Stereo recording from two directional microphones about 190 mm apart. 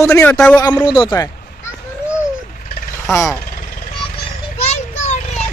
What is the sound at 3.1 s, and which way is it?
Speech, 5° right (ahead or behind).